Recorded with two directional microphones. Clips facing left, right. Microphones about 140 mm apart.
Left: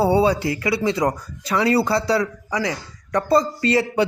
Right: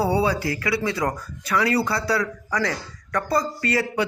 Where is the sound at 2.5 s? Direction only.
15° left (ahead or behind).